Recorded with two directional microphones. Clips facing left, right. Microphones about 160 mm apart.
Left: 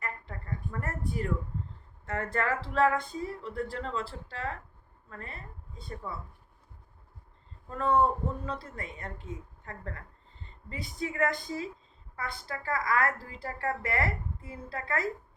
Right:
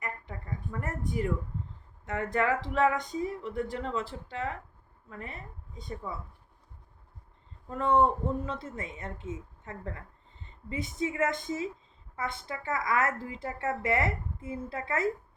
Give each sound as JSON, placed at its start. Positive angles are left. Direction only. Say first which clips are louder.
{"t": 0.0, "sound": "a sound", "louder": "right 1 dB", "side_deg": -15}
{"t": 2.0, "sound": "speech", "louder": "right 2 dB", "side_deg": -15}
{"t": 7.7, "sound": "a woman's voice", "louder": "right 1 dB", "side_deg": -20}